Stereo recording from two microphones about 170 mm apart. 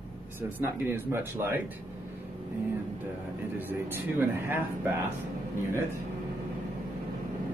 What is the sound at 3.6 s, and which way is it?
Speech, 10° right (ahead or behind).